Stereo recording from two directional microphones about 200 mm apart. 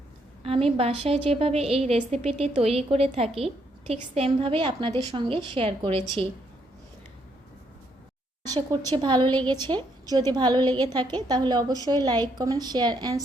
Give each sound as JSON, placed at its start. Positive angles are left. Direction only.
{"t": 0.4, "sound": "a woman's voice", "side_deg": -30}
{"t": 8.4, "sound": "a woman's voice", "side_deg": -20}